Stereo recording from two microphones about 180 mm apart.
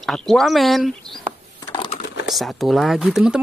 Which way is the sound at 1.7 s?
25° left (ahead or behind).